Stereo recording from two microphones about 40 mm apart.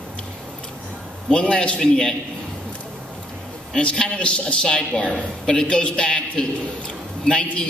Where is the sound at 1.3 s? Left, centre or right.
Left.